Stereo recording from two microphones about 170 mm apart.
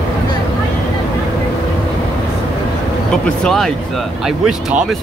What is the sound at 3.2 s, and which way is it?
A man's voice, 5° left (ahead or behind).